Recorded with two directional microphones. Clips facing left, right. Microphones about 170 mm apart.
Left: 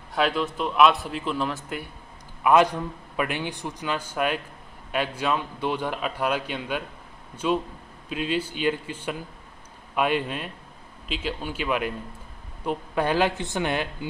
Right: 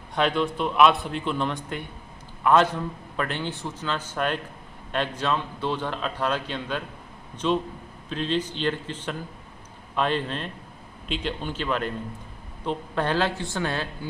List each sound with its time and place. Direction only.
0.1 s a man's voice: 5° left (ahead or behind)